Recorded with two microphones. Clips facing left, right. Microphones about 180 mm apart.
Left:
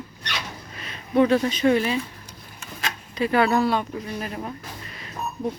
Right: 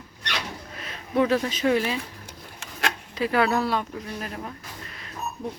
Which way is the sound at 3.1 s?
Centre (ahead or behind).